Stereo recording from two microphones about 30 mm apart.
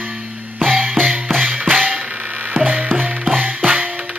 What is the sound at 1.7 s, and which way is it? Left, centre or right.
Music, right.